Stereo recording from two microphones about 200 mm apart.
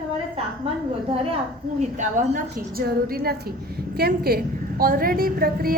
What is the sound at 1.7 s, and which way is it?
A woman's voice, 35° right (ahead or behind).